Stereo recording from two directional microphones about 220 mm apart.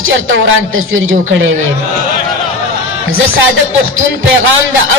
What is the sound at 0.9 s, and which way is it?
Speech, 65° right (ahead or behind).